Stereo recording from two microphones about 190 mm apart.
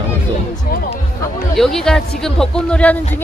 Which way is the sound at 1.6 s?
Centre (ahead or behind).